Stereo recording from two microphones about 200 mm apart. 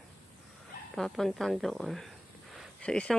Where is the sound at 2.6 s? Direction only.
5° left (ahead or behind).